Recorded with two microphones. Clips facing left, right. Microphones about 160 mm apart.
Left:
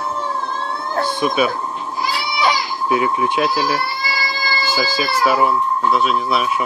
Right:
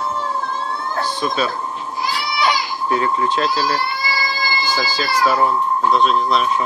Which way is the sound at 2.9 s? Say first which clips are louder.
Left 1 dB; 10° left (ahead or behind).